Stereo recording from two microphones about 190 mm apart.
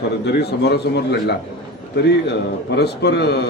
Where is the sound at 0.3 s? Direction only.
60° left (ahead or behind).